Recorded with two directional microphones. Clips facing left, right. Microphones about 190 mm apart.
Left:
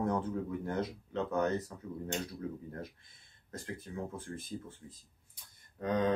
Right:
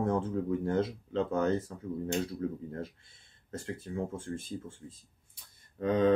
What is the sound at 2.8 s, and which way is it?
Speech, 25° right (ahead or behind).